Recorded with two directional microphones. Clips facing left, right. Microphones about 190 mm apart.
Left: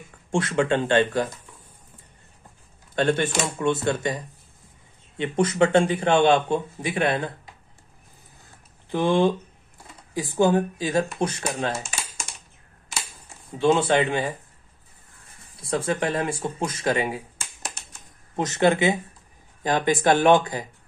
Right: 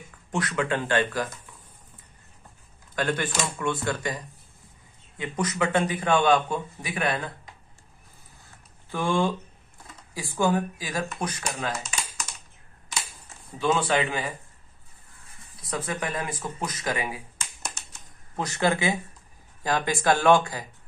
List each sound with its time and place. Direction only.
0.3 s a man's voice: 25° left (ahead or behind)
3.0 s a man's voice: 25° left (ahead or behind)
8.9 s a man's voice: 20° left (ahead or behind)
13.6 s a man's voice: 25° left (ahead or behind)
15.6 s a man's voice: 30° left (ahead or behind)
18.3 s a man's voice: 20° left (ahead or behind)